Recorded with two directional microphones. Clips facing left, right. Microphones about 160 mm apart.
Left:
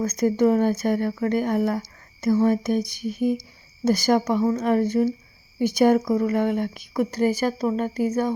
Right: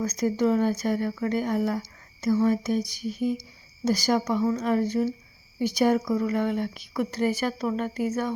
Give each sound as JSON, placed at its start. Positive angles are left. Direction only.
{"t": 0.0, "sound": "speech", "side_deg": 50}